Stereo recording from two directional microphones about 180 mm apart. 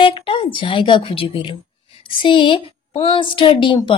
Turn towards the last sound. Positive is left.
turn(degrees=25)  # may be behind; listen again after turning